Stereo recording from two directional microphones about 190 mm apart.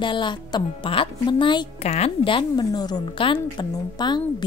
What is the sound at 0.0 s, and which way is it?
Speech, 25° left (ahead or behind).